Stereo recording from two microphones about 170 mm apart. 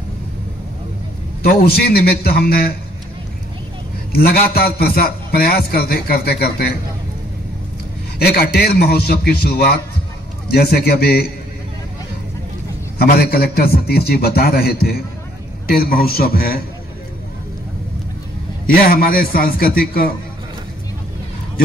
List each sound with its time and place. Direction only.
1.4 s a man's voice: 65° left (ahead or behind)
4.1 s a man's voice: 65° left (ahead or behind)
8.2 s a man's voice: 65° left (ahead or behind)
13.0 s a man's voice: 65° left (ahead or behind)
18.7 s a man's voice: 60° left (ahead or behind)